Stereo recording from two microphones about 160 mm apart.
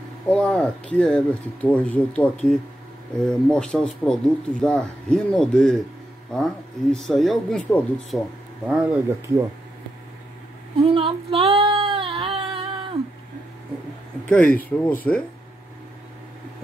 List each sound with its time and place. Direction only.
0.3 s speech: 5° left (ahead or behind)
8.6 s speech: 5° right (ahead or behind)
10.8 s female singing: 35° right (ahead or behind)
14.2 s speech: 10° left (ahead or behind)